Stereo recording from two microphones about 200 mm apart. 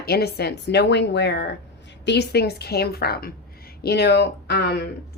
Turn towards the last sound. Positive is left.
turn(degrees=55)  # may be behind; listen again after turning